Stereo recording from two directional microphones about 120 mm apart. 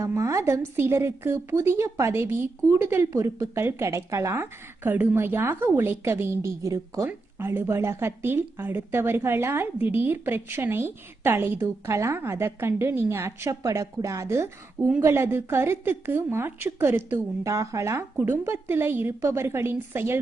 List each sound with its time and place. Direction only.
0.0 s a woman's voice: 25° right (ahead or behind)